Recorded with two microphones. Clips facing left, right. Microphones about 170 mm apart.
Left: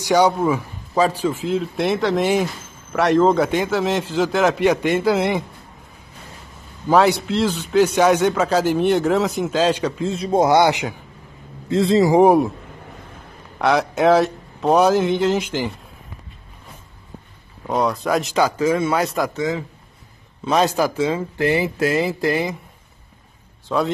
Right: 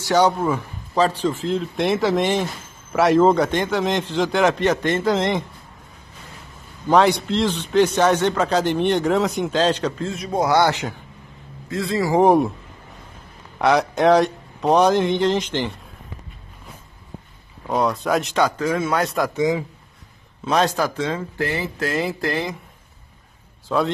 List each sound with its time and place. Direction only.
0.0 s a man's voice: 10° left (ahead or behind)
6.9 s a man's voice: 5° left (ahead or behind)
10.1 s speech: 30° left (ahead or behind)
11.7 s speech: 25° left (ahead or behind)
12.1 s a man's voice: 10° left (ahead or behind)
13.6 s a man's voice: centre (ahead or behind)
17.6 s a man's voice: centre (ahead or behind)
19.3 s a man's voice: 15° right (ahead or behind)
20.4 s a man's voice: centre (ahead or behind)
23.7 s a man's voice: centre (ahead or behind)